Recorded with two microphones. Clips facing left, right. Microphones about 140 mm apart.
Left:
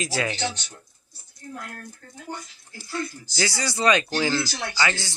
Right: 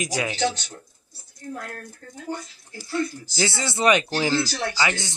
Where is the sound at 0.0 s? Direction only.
15° right (ahead or behind).